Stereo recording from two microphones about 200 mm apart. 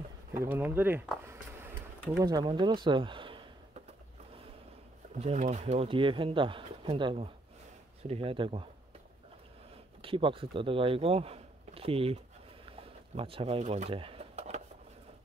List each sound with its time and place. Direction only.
0.3 s speech: 10° right (ahead or behind)
1.2 s a sound: 10° right (ahead or behind)
2.1 s speech: 20° right (ahead or behind)
5.2 s speech: 35° right (ahead or behind)
10.0 s speech: 25° right (ahead or behind)
12.6 s a sound: 30° right (ahead or behind)